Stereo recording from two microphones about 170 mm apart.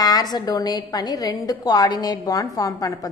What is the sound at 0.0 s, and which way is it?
A woman's voice, 20° left (ahead or behind).